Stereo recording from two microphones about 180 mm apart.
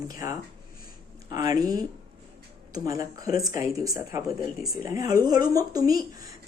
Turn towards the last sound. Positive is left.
turn(degrees=-20)  # may be behind; listen again after turning